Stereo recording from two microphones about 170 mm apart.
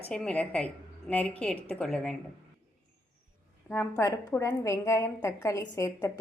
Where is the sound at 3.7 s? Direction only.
15° left (ahead or behind).